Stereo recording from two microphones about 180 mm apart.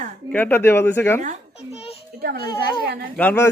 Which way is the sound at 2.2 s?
55° right (ahead or behind).